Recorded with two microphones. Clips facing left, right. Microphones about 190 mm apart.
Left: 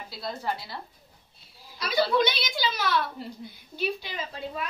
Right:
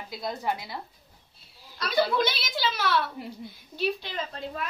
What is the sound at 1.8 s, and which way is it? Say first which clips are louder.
A woman's voice: left 1 dB; centre (ahead or behind).